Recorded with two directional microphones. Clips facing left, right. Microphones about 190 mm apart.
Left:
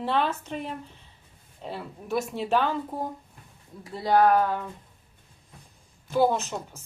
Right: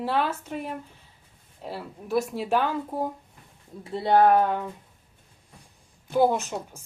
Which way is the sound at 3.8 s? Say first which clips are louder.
Right 2 dB; 25° right (ahead or behind).